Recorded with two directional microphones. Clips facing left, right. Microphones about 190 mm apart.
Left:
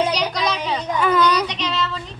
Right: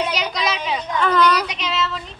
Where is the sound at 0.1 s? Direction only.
Centre (ahead or behind).